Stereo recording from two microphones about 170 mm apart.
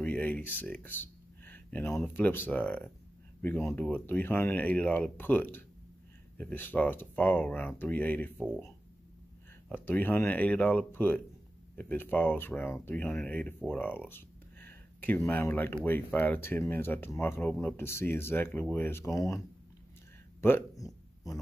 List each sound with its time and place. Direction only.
0.0 s speech: 10° left (ahead or behind)
9.7 s speech: 10° left (ahead or behind)
20.3 s a sound: 15° left (ahead or behind)